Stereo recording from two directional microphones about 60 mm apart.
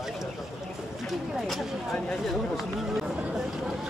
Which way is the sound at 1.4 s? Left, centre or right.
Centre.